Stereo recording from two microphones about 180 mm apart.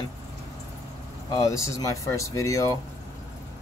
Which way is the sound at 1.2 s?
20° left (ahead or behind).